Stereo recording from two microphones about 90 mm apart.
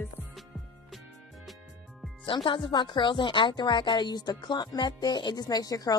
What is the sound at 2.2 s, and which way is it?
Speech, 65° left (ahead or behind).